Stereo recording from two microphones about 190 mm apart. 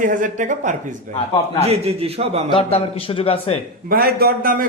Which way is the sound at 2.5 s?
30° left (ahead or behind).